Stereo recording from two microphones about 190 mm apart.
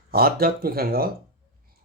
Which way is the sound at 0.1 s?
50° right (ahead or behind).